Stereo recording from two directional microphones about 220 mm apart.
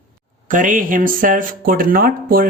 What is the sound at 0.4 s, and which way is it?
A woman's voice, 35° right (ahead or behind).